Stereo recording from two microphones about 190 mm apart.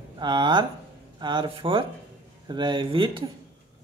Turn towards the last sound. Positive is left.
turn(degrees=-25)  # may be behind; listen again after turning